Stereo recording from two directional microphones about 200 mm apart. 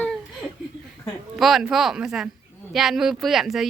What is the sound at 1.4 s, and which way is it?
Speech, centre (ahead or behind).